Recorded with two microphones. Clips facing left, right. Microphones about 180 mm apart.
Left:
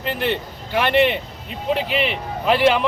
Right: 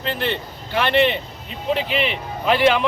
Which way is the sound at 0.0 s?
10° left (ahead or behind).